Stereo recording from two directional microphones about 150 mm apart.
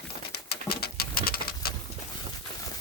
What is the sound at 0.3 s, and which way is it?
Pigeon, 90° left.